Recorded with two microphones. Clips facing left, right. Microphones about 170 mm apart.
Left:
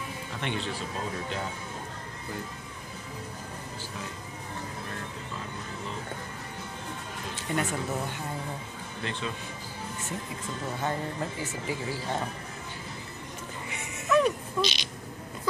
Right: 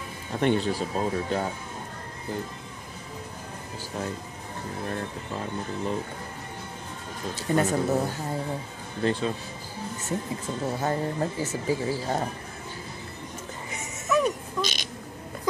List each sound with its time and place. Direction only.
0.4 s speech: 45° right (ahead or behind)
7.3 s speech: 35° right (ahead or behind)
10.8 s speech: 40° right (ahead or behind)
14.0 s music: 5° right (ahead or behind)
14.6 s speech: 45° right (ahead or behind)